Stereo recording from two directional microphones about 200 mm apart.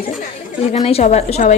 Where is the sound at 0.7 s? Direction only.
30° left (ahead or behind).